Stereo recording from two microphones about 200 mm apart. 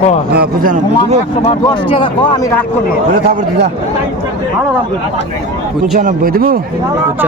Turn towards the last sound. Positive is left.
turn(degrees=-45)  # may be behind; listen again after turning